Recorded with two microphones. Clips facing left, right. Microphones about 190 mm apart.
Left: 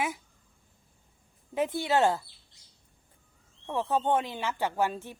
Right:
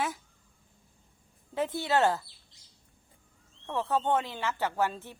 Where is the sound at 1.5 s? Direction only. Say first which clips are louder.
Left 1 dB; 15° left (ahead or behind).